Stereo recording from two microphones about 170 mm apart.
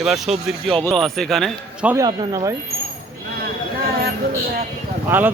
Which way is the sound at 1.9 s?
20° right (ahead or behind).